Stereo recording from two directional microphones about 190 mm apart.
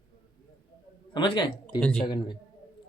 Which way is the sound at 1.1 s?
25° left (ahead or behind).